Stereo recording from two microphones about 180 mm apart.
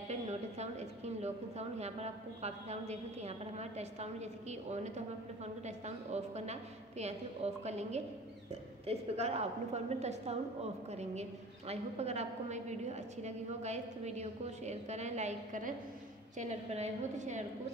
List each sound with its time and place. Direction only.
0.1 s a woman's voice: 40° right (ahead or behind)